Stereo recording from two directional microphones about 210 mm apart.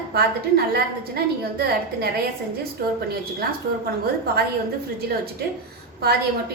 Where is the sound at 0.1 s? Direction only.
50° right (ahead or behind).